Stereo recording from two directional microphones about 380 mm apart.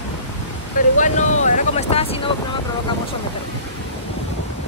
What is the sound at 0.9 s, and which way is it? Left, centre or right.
Wind noise, centre.